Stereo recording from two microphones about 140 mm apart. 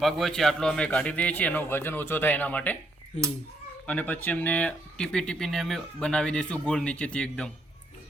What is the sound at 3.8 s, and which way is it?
Speech, 10° left (ahead or behind).